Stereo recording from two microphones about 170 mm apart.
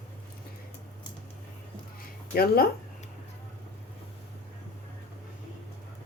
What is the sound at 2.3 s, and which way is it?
Speech, 65° left (ahead or behind).